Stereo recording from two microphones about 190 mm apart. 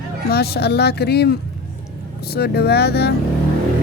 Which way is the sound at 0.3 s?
55° left (ahead or behind).